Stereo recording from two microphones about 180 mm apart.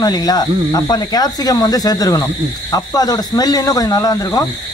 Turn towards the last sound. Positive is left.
turn(degrees=20)  # may be behind; listen again after turning